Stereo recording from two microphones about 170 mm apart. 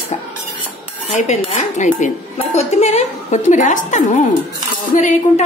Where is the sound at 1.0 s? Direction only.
45° left (ahead or behind).